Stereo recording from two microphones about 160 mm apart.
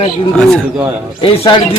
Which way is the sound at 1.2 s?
30° left (ahead or behind).